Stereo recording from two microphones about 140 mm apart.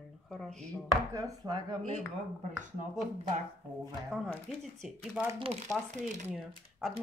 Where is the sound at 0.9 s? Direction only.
25° right (ahead or behind).